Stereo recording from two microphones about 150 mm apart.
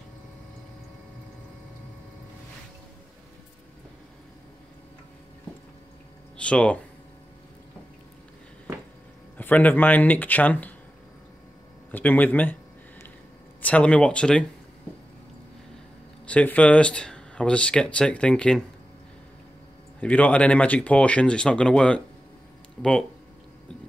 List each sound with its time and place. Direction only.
6.3 s speech: 5° left (ahead or behind)
9.4 s speech: 10° left (ahead or behind)
11.9 s speech: 10° left (ahead or behind)
13.6 s speech: 10° left (ahead or behind)
16.3 s speech: 10° left (ahead or behind)
20.0 s speech: 10° left (ahead or behind)